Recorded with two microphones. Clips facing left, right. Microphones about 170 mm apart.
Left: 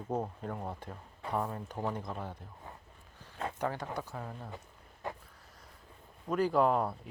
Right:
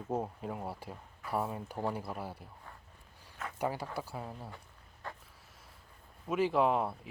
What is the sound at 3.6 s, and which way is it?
Speech, 10° right (ahead or behind).